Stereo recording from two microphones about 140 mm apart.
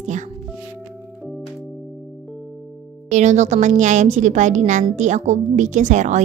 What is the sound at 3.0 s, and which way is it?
A woman's voice, 60° right (ahead or behind).